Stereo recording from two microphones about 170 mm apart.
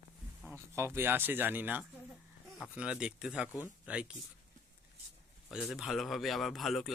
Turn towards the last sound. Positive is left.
turn(degrees=0)  # may be behind; listen again after turning